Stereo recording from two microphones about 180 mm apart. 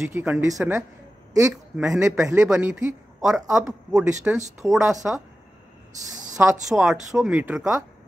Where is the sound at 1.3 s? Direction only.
20° right (ahead or behind).